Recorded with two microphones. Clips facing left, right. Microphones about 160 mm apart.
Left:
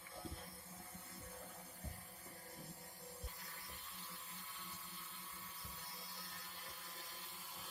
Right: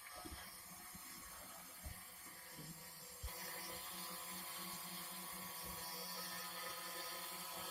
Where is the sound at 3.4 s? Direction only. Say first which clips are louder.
Right 4 dB; 40° right (ahead or behind).